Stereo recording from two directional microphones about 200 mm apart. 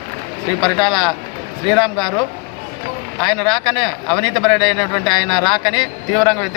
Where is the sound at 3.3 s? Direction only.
5° left (ahead or behind).